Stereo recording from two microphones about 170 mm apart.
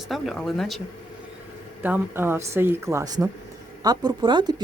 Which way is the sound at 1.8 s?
10° right (ahead or behind).